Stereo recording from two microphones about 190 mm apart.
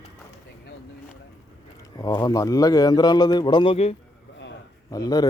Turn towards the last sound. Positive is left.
turn(degrees=20)  # may be behind; listen again after turning